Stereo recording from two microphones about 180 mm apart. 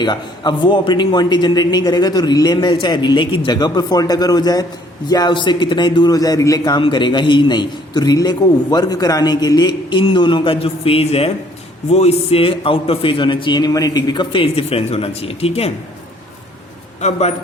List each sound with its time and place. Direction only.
0.0 s a man's voice: 25° left (ahead or behind)
17.0 s a man's voice: 35° left (ahead or behind)